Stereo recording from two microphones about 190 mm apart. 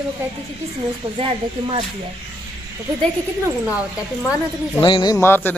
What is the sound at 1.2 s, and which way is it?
Speech, 25° right (ahead or behind).